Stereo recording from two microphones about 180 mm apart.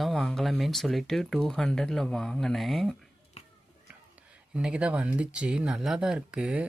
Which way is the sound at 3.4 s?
35° left (ahead or behind).